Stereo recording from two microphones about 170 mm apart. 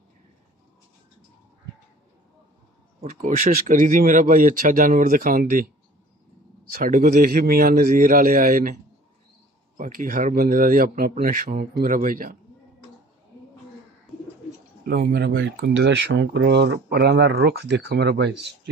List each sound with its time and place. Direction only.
3.0 s speech: 50° right (ahead or behind)
6.7 s a man's voice: 55° right (ahead or behind)
9.8 s a man's voice: 55° right (ahead or behind)
14.9 s speech: 70° right (ahead or behind)